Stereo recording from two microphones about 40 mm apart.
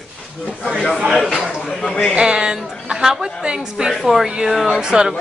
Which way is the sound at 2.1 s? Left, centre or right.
Right.